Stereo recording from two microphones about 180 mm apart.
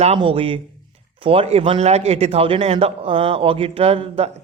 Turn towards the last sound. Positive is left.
turn(degrees=-35)  # may be behind; listen again after turning